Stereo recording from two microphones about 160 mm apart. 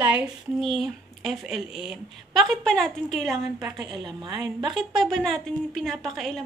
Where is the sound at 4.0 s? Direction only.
30° right (ahead or behind).